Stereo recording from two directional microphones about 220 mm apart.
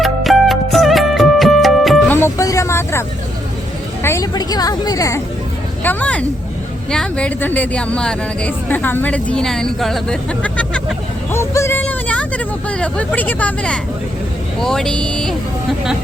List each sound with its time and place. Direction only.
0.0 s music: centre (ahead or behind)
2.1 s vehicle: 15° left (ahead or behind)
4.0 s a woman's voice: 15° left (ahead or behind)